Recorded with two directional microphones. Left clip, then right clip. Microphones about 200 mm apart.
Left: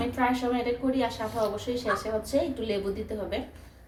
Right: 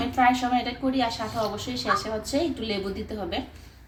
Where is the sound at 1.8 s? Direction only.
20° left (ahead or behind).